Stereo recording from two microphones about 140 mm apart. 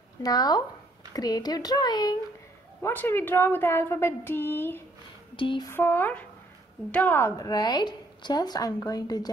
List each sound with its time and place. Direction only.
0.2 s speech: 25° left (ahead or behind)
2.8 s speech: 15° left (ahead or behind)
5.3 s a sound: 35° left (ahead or behind)
5.7 s speech: 15° left (ahead or behind)